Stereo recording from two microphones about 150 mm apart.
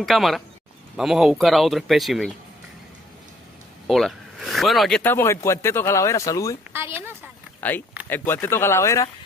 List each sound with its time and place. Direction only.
0.0 s speech: centre (ahead or behind)
3.8 s speech: centre (ahead or behind)
5.0 s speech: 15° left (ahead or behind)
6.7 s a sound: 15° right (ahead or behind)
7.6 s speech: 10° left (ahead or behind)